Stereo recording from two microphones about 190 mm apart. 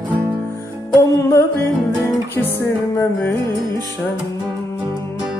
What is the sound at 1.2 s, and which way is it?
Music, 15° left (ahead or behind).